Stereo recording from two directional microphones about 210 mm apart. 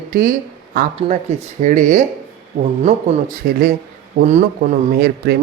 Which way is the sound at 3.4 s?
50° right (ahead or behind).